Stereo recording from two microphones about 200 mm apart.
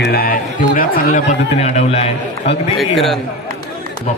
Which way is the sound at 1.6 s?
35° left (ahead or behind).